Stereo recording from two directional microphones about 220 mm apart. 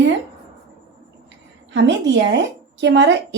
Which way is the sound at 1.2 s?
55° right (ahead or behind).